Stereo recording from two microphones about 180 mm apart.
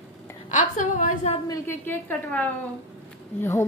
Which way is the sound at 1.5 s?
10° left (ahead or behind).